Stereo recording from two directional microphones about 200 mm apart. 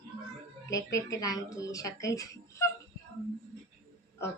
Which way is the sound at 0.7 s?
15° left (ahead or behind).